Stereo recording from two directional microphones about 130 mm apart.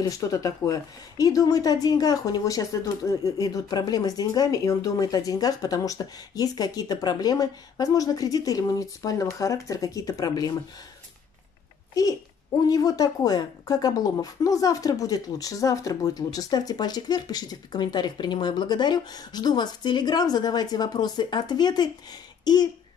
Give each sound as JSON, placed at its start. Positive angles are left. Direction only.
{"t": 0.0, "sound": "a woman's voice", "side_deg": 25}
{"t": 11.9, "sound": "a woman's voice", "side_deg": 30}